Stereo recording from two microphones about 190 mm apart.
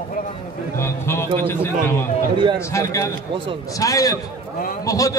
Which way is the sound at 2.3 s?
25° right (ahead or behind).